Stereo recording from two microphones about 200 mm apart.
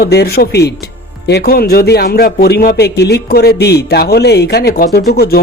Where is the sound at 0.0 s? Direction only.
50° left (ahead or behind).